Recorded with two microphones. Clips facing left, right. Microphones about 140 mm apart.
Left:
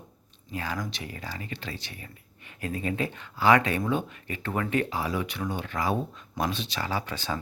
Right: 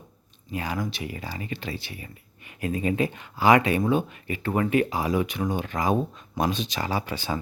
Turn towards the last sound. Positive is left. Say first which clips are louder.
# right 3 dB
turn(degrees=-10)  # may be behind; listen again after turning